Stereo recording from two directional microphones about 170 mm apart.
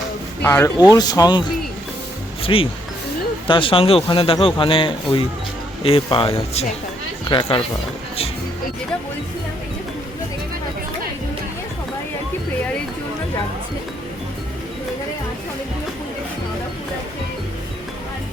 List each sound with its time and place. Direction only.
0.4 s speech: 15° left (ahead or behind)
2.4 s a man's voice: 35° left (ahead or behind)